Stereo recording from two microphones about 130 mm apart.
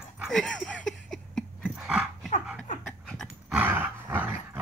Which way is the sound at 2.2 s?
75° left (ahead or behind).